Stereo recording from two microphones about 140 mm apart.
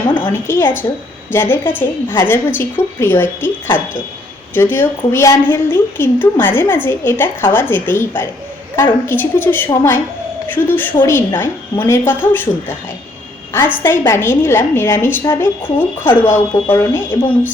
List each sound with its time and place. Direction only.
0.2 s a woman's voice: 15° left (ahead or behind)